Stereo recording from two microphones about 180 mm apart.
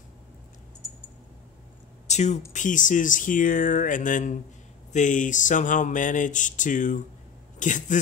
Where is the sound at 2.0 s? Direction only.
40° left (ahead or behind).